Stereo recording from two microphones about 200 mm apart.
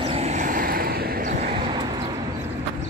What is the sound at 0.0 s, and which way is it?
Vehicle, 30° right (ahead or behind).